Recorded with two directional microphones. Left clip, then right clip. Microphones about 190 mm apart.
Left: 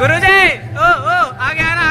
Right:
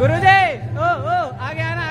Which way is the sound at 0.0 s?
20° right (ahead or behind).